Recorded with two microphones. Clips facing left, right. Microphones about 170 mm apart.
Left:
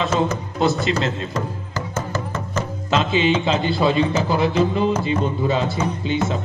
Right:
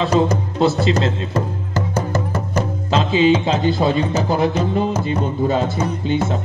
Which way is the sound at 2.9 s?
35° right (ahead or behind).